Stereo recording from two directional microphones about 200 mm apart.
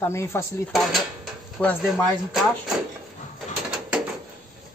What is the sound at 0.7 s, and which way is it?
A woman's voice, centre (ahead or behind).